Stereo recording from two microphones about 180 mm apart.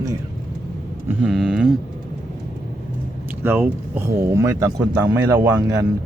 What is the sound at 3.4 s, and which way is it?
Speech, 10° right (ahead or behind).